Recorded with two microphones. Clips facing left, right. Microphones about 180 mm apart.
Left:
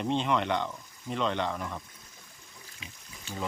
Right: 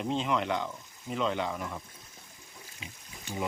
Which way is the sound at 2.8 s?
15° right (ahead or behind).